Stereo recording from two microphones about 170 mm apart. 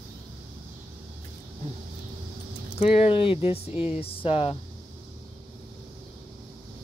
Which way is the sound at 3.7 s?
10° right (ahead or behind).